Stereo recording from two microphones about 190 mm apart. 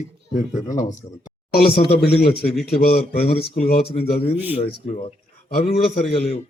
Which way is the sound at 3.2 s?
30° left (ahead or behind).